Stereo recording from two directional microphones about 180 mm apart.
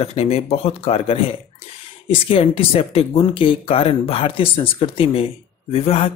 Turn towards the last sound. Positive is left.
turn(degrees=35)  # may be behind; listen again after turning